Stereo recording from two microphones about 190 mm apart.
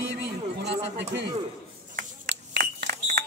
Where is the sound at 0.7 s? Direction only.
65° right (ahead or behind).